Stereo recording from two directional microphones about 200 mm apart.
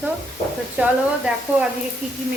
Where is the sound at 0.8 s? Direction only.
10° right (ahead or behind).